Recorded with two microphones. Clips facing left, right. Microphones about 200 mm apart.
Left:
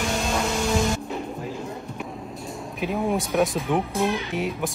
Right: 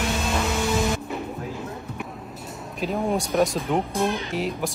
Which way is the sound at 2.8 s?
Centre (ahead or behind).